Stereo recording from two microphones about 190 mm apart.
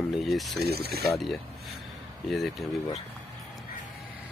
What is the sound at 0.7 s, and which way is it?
Speech, 55° right (ahead or behind).